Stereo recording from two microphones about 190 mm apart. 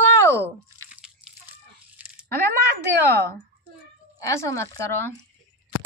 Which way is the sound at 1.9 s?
5° right (ahead or behind).